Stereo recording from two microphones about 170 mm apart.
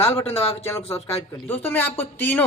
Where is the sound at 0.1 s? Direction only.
35° left (ahead or behind).